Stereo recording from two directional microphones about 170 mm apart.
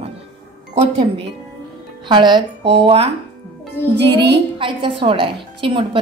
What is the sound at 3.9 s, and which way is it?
Speech, 80° right.